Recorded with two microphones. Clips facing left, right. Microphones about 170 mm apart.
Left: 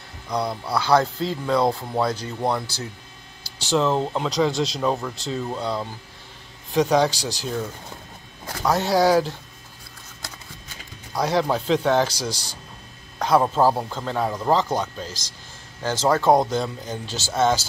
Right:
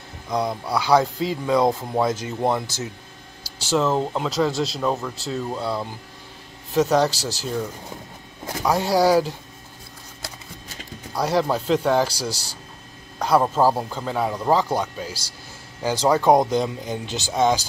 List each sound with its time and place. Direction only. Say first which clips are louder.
0.3 s speech: right 1 dB; 15° right (ahead or behind)
3.4 s speech: even; 10° right (ahead or behind)
8.6 s speech: even; 10° right (ahead or behind)
11.1 s speech: even; 5° right (ahead or behind)